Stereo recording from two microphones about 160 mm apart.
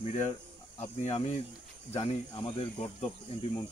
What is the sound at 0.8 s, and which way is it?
Speech, 45° left (ahead or behind).